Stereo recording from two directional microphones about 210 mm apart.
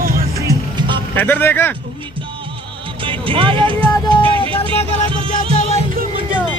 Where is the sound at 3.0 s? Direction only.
25° right (ahead or behind).